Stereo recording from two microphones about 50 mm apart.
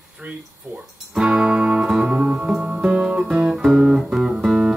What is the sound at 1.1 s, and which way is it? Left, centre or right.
Music, centre.